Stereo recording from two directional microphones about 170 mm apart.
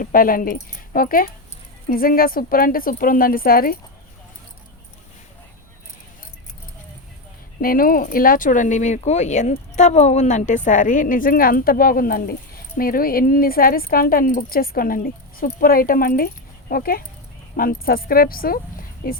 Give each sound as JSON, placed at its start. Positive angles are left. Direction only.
{"t": 0.0, "sound": "speech", "side_deg": 55}
{"t": 7.6, "sound": "speech", "side_deg": 60}